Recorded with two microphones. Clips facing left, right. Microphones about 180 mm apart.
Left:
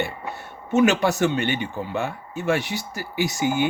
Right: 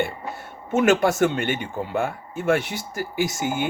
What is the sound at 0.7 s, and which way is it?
Speech, 50° right (ahead or behind).